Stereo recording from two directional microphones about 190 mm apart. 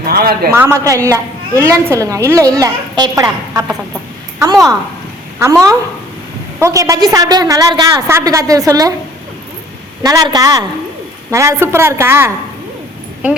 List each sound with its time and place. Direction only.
0.1 s a man's voice: 50° right (ahead or behind)
0.5 s a woman's voice: 15° right (ahead or behind)
10.0 s a woman's voice: 20° right (ahead or behind)